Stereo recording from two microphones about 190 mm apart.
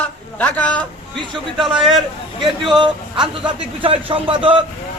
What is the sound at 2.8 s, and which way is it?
A man's voice, 25° right (ahead or behind).